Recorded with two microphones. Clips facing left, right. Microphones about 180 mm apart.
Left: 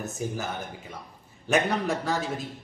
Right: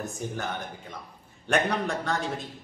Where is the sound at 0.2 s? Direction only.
5° left (ahead or behind).